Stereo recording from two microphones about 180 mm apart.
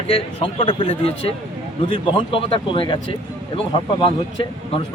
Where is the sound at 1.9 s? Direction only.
30° left (ahead or behind).